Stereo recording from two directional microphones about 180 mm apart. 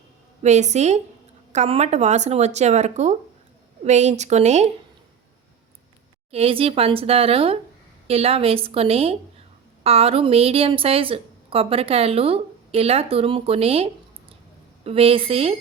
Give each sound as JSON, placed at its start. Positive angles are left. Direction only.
{"t": 0.4, "sound": "speech", "side_deg": -40}
{"t": 6.3, "sound": "a woman's voice", "side_deg": -30}